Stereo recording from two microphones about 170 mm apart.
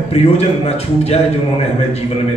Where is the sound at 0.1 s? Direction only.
40° left (ahead or behind).